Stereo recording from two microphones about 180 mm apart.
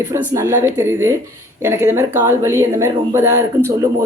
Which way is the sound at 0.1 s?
15° right (ahead or behind).